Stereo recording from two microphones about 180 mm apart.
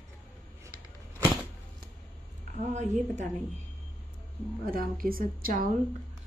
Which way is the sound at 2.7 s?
40° right (ahead or behind).